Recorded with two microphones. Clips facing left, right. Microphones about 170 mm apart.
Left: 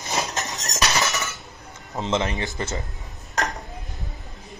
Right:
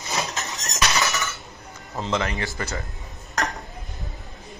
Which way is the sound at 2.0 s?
20° left (ahead or behind).